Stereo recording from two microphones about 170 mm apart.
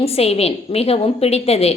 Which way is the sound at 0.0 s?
35° left (ahead or behind).